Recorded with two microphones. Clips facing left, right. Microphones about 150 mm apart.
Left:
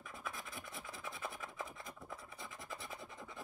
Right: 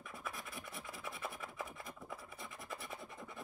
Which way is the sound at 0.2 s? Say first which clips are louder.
Even; centre (ahead or behind).